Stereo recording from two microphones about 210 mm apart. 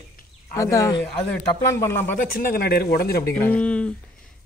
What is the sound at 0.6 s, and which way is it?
Speech, 15° left (ahead or behind).